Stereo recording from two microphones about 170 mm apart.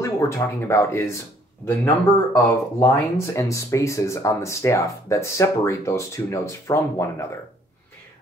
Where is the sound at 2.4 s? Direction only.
15° left (ahead or behind).